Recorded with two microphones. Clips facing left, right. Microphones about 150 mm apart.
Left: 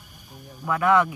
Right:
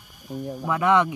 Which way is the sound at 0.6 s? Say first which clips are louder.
Even; 20° right (ahead or behind).